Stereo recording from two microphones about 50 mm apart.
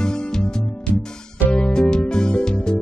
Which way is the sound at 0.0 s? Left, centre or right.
Centre.